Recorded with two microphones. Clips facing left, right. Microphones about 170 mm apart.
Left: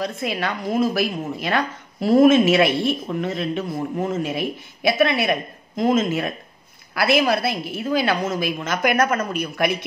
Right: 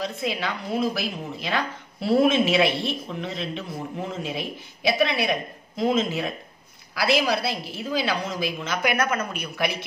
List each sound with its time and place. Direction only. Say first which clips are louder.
0.0 s a woman's voice: left 3 dB; 55° left (ahead or behind)